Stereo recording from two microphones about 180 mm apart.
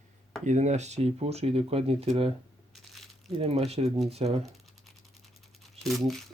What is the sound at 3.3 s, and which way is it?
Speech, 30° right (ahead or behind).